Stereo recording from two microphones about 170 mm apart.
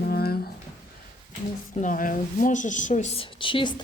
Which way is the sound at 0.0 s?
65° left (ahead or behind).